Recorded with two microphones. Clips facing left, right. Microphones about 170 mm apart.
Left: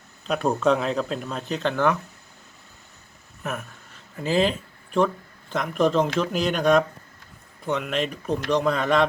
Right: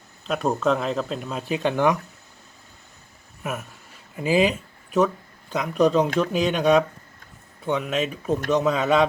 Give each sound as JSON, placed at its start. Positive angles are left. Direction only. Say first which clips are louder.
{"t": 0.3, "sound": "speech", "louder": "left 1 dB", "side_deg": 0}
{"t": 3.4, "sound": "speech", "louder": "right 1 dB", "side_deg": -5}